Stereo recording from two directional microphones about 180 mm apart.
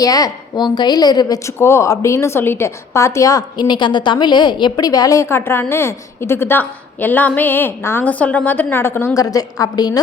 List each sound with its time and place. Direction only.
0.0 s a woman's voice: 20° left (ahead or behind)